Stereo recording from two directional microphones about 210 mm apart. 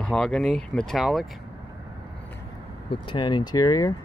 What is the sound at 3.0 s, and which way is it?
Speech, 20° left (ahead or behind).